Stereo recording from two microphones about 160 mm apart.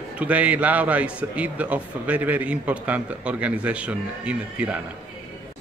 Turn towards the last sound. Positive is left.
turn(degrees=-10)  # may be behind; listen again after turning